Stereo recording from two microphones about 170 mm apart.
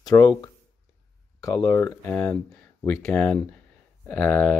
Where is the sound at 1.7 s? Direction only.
15° left (ahead or behind).